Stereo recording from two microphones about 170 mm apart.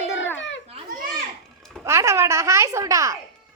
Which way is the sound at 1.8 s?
15° right (ahead or behind).